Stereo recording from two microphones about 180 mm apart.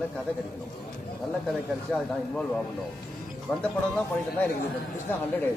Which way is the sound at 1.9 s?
5° left (ahead or behind).